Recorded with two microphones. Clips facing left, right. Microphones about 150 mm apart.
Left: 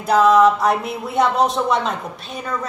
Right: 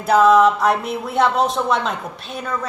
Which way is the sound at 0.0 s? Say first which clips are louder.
Even; centre (ahead or behind).